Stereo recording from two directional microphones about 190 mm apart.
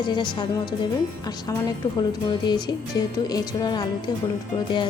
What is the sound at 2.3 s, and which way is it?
Speech, 25° left (ahead or behind).